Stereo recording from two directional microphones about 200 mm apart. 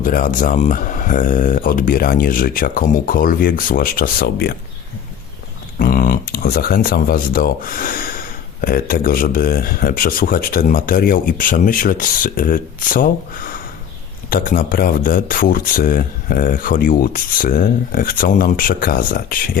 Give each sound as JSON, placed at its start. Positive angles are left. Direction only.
{"t": 0.0, "sound": "speech", "side_deg": 45}
{"t": 5.8, "sound": "speech", "side_deg": 45}